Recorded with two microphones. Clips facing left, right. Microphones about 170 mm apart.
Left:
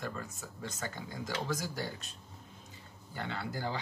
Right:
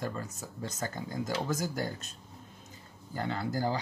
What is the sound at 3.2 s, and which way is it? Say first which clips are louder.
Speech: right 6 dB; 40° right (ahead or behind).